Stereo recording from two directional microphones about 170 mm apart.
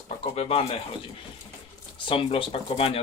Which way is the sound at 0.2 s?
35° left (ahead or behind).